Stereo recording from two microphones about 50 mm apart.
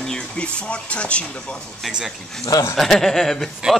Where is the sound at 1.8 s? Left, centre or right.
Centre.